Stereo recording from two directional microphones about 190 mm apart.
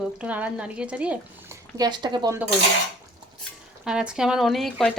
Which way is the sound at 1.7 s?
20° right (ahead or behind).